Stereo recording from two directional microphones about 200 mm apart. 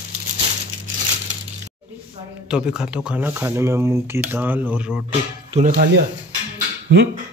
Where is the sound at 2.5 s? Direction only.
5° right (ahead or behind).